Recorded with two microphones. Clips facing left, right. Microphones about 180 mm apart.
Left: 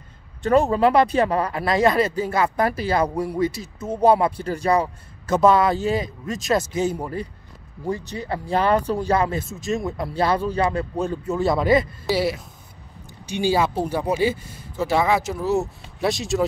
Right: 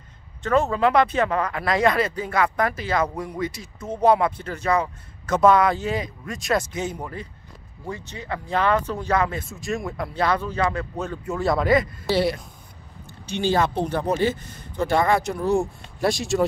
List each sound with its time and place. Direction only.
0.4 s speech: 35° left (ahead or behind)
11.3 s speech: centre (ahead or behind)
11.6 s speech: 25° left (ahead or behind)
12.1 s speech: 5° left (ahead or behind)